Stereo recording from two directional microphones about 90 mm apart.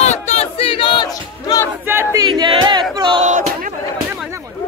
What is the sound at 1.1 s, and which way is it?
Battle cry, 40° left (ahead or behind).